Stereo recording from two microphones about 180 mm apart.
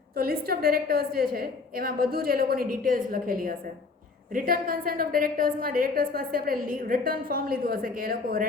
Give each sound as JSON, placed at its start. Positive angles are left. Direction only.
{"t": 0.2, "sound": "a woman's voice", "side_deg": -55}